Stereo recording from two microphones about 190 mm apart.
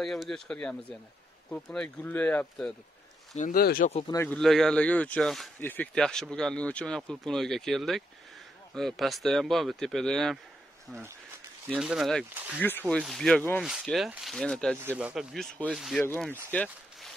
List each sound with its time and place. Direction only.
0.0 s speech: centre (ahead or behind)
3.3 s speech: 45° left (ahead or behind)
4.1 s speech: 15° left (ahead or behind)
4.4 s speech: centre (ahead or behind)
11.7 s speech: 5° right (ahead or behind)